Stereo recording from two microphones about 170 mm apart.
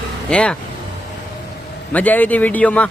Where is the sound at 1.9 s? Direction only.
10° left (ahead or behind).